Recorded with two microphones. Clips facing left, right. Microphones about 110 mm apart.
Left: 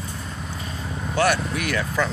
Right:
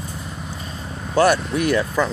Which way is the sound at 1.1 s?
30° right (ahead or behind).